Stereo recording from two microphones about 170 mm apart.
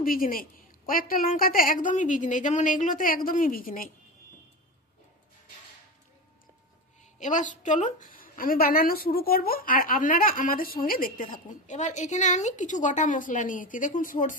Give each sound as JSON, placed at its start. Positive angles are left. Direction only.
{"t": 0.0, "sound": "a woman's voice", "side_deg": 55}
{"t": 7.2, "sound": "a woman's voice", "side_deg": 50}
{"t": 11.4, "sound": "a woman's voice", "side_deg": 45}